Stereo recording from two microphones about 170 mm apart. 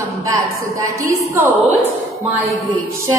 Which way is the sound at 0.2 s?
20° right (ahead or behind).